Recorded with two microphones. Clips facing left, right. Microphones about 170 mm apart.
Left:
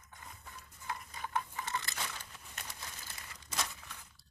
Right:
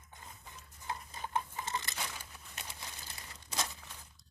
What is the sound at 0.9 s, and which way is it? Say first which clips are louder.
Crunch: right 1 dB; 25° right (ahead or behind).